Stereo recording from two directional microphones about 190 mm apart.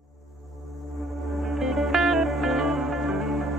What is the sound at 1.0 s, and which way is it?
Music, centre (ahead or behind).